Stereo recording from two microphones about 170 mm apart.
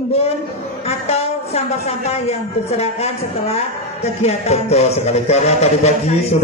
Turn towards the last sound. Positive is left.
turn(degrees=40)  # may be behind; listen again after turning